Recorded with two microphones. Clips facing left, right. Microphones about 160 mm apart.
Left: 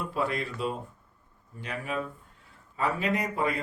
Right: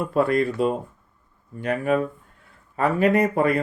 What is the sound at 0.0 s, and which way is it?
Speech, 50° right (ahead or behind).